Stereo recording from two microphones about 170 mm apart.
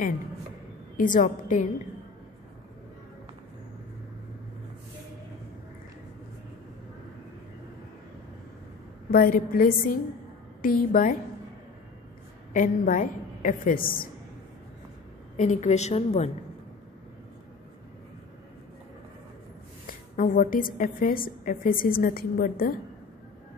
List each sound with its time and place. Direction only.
0.9 s a woman's voice: 50° left (ahead or behind)
9.1 s a woman's voice: 55° left (ahead or behind)
12.5 s a woman's voice: 50° left (ahead or behind)
15.3 s a woman's voice: 45° left (ahead or behind)
19.9 s a woman's voice: 55° left (ahead or behind)